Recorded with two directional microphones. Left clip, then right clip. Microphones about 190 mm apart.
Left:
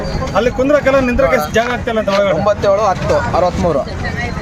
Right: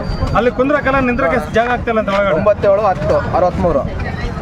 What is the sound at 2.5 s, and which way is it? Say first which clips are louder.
Speech: right 3 dB; 10° right (ahead or behind).